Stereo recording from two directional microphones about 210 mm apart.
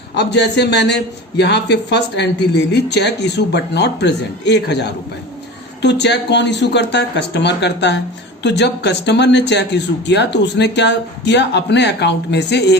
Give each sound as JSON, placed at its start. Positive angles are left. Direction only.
{"t": 0.1, "sound": "a man's voice", "side_deg": 55}